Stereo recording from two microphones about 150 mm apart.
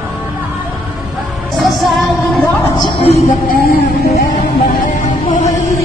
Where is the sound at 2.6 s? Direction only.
30° left (ahead or behind).